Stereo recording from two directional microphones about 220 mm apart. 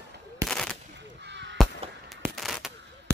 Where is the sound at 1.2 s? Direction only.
55° right (ahead or behind).